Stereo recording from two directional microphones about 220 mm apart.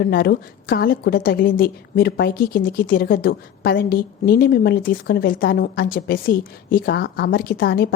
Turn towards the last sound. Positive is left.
turn(degrees=45)  # may be behind; listen again after turning